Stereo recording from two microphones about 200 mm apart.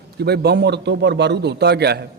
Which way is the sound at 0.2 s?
55° right (ahead or behind).